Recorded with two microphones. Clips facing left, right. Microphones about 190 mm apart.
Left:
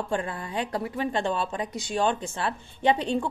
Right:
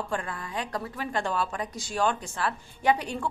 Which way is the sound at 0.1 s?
30° left (ahead or behind).